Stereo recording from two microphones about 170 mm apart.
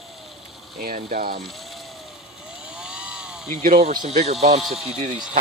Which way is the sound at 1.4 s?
Centre (ahead or behind).